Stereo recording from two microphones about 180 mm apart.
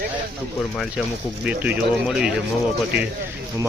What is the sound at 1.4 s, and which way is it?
Speech, 10° right (ahead or behind).